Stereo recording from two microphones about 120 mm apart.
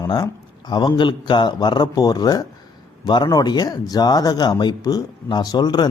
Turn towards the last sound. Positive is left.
turn(degrees=35)  # may be behind; listen again after turning